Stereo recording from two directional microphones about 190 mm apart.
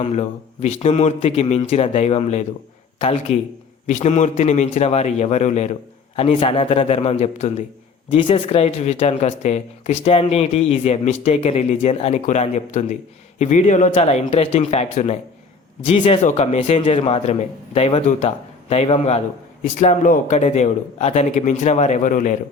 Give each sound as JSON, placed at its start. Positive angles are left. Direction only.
{"t": 0.0, "sound": "speech", "side_deg": 35}